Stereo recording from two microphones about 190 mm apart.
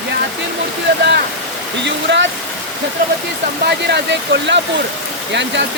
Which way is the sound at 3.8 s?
65° right (ahead or behind).